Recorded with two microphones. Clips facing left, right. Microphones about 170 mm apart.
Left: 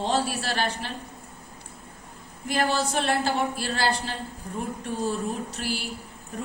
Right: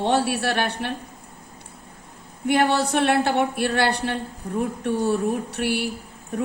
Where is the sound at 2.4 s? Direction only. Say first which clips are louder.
Right 5 dB; 65° right (ahead or behind).